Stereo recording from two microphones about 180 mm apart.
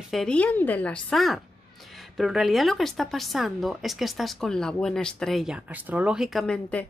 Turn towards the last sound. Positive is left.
turn(degrees=5)  # may be behind; listen again after turning